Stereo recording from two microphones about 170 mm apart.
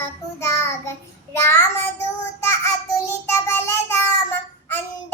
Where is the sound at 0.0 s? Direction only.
15° left (ahead or behind).